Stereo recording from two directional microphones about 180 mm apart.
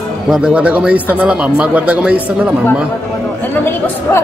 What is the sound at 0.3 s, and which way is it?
A man's voice, 5° right (ahead or behind).